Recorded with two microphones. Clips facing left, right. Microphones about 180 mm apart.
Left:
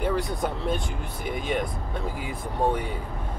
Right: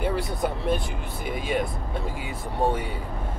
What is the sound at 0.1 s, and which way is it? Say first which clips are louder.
Speech: even; 5° right (ahead or behind).